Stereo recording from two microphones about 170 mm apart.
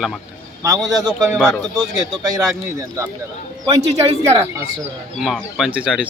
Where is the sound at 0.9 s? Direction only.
20° right (ahead or behind).